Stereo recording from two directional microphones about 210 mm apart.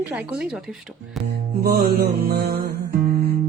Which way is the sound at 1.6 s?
45° right (ahead or behind).